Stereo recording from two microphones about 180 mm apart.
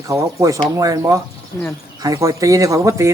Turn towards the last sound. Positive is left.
turn(degrees=-15)  # may be behind; listen again after turning